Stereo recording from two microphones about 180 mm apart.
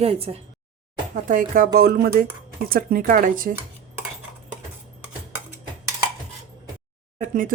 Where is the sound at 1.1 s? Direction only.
45° right (ahead or behind).